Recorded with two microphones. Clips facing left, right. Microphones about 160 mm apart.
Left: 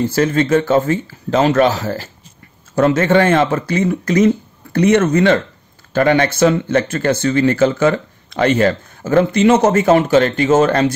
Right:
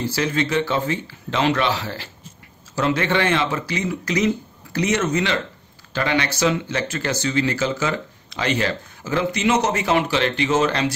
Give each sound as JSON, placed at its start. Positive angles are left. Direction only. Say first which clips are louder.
{"t": 0.0, "sound": "speech", "louder": "left 7 dB", "side_deg": 50}